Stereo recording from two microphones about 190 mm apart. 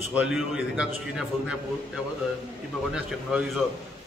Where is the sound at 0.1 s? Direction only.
5° right (ahead or behind).